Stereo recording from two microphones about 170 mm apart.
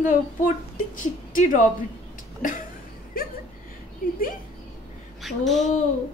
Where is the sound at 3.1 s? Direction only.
55° left (ahead or behind).